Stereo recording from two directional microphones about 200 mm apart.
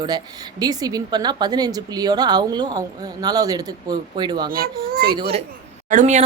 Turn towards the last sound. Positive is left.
turn(degrees=-40)  # may be behind; listen again after turning